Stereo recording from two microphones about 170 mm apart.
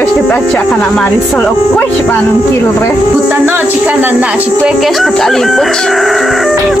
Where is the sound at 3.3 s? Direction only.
10° right (ahead or behind).